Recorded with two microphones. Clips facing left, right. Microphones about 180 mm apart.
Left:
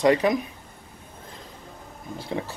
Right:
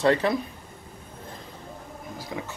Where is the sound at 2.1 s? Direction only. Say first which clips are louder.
Left 5 dB; 30° left (ahead or behind).